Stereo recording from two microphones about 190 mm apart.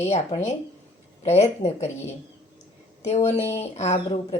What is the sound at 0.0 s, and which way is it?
A woman's voice, 35° left (ahead or behind).